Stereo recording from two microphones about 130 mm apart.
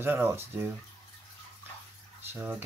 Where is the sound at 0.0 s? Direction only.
15° right (ahead or behind).